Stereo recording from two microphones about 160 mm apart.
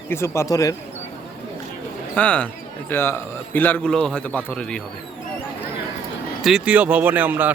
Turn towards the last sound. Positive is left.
turn(degrees=-10)  # may be behind; listen again after turning